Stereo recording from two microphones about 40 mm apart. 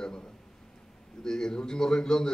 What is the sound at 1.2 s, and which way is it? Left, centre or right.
A man's voice, centre.